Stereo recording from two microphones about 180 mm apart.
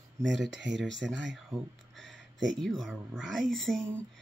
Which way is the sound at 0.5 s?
80° right.